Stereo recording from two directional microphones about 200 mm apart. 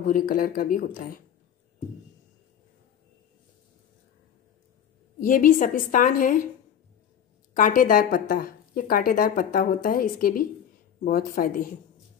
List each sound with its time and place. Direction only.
0.0 s speech: 45° left (ahead or behind)
5.2 s a woman's voice: 40° left (ahead or behind)
7.5 s speech: 40° left (ahead or behind)